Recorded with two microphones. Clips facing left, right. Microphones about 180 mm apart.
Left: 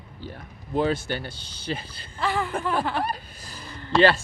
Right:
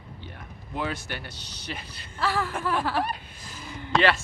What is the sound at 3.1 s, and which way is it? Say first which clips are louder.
Speech: left 3 dB; 35° left (ahead or behind).